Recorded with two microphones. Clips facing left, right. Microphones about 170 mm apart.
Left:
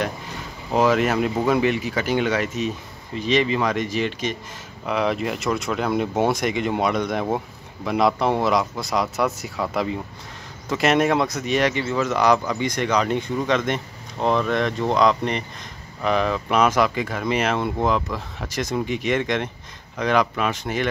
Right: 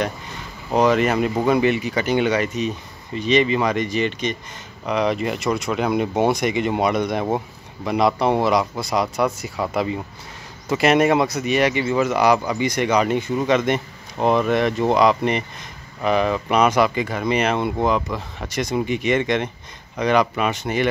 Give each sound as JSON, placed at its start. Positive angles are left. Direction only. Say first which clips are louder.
{"t": 0.7, "sound": "speech", "louder": "right 2 dB", "side_deg": 0}